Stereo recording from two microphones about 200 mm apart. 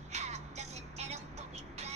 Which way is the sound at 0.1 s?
35° right (ahead or behind).